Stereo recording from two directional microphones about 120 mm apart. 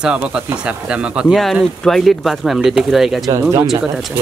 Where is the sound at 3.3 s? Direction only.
25° right (ahead or behind).